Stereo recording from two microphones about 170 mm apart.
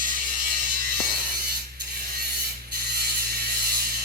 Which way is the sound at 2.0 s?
60° right (ahead or behind).